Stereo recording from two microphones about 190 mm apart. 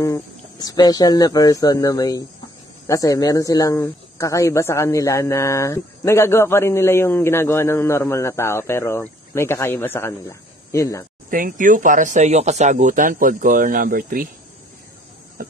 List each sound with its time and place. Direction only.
0.0 s speech: 20° left (ahead or behind)
11.2 s speech: 45° right (ahead or behind)